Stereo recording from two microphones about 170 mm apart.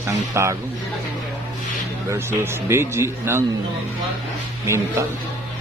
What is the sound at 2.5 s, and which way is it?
Speech, 15° right (ahead or behind).